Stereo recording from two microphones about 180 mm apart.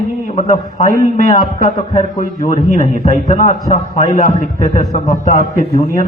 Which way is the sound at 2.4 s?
45° left (ahead or behind).